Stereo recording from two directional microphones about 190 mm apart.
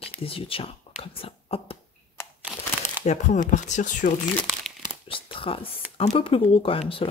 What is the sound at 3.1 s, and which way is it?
Speech, 40° left (ahead or behind).